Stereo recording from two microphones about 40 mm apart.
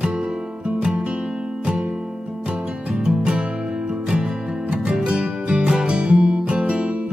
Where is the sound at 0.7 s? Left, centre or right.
Right.